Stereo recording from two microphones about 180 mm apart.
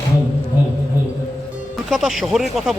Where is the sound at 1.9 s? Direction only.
Centre (ahead or behind).